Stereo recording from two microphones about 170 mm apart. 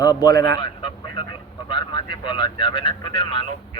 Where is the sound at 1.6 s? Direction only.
30° left (ahead or behind).